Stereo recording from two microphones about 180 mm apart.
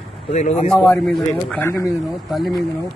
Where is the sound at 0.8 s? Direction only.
5° left (ahead or behind).